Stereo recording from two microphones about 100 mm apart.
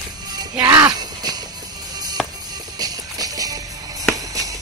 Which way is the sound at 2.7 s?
40° right (ahead or behind).